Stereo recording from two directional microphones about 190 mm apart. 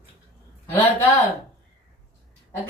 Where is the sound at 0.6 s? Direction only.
15° left (ahead or behind).